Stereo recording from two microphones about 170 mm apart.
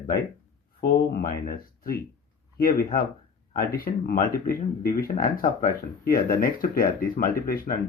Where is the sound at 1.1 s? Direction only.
60° left (ahead or behind).